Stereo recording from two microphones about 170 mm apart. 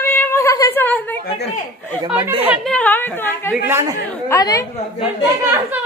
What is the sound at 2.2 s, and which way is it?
Speech, 10° right (ahead or behind).